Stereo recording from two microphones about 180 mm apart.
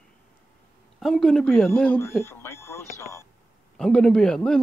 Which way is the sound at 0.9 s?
Centre (ahead or behind).